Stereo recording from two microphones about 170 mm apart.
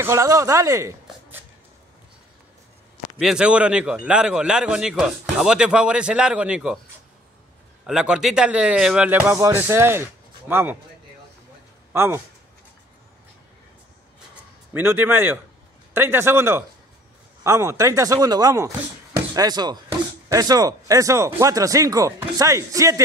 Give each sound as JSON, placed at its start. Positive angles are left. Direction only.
{"t": 0.0, "sound": "speech", "side_deg": -15}
{"t": 3.2, "sound": "a man's voice", "side_deg": -5}
{"t": 7.8, "sound": "speech", "side_deg": -5}
{"t": 11.9, "sound": "speech", "side_deg": -15}
{"t": 14.7, "sound": "speech", "side_deg": -10}